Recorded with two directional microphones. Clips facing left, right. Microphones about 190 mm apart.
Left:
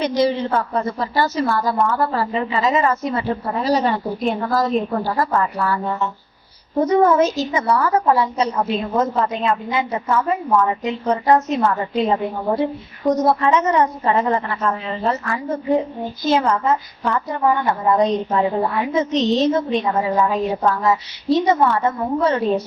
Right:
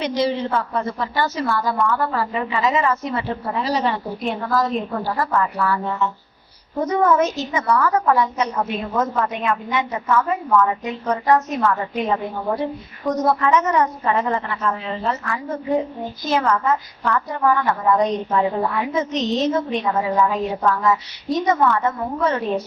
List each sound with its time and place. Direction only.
0.0 s a woman's voice: 45° left (ahead or behind)
6.8 s a woman's voice: 30° left (ahead or behind)
16.3 s a woman's voice: 25° left (ahead or behind)